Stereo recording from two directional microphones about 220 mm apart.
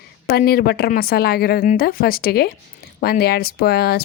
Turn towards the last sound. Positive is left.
turn(degrees=45)  # may be behind; listen again after turning